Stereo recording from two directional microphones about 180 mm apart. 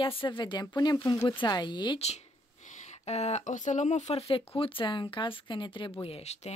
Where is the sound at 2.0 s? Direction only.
40° left (ahead or behind).